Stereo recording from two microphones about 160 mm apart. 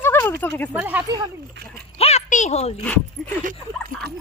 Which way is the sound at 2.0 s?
45° left (ahead or behind).